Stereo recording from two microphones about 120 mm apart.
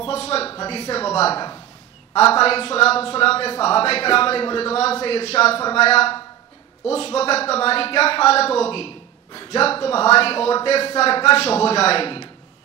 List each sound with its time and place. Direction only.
0.0 s a sound: 55° left (ahead or behind)
0.6 s speech: 55° left (ahead or behind)
2.4 s a man's voice: 55° left (ahead or behind)